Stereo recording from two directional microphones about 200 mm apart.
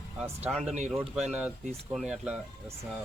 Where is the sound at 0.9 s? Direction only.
5° right (ahead or behind).